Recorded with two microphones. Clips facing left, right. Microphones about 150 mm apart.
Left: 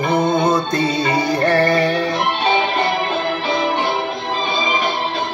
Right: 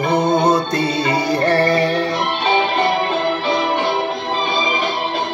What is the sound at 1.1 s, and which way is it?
Music, 30° right (ahead or behind).